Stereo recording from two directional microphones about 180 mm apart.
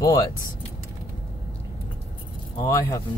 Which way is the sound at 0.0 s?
20° left (ahead or behind).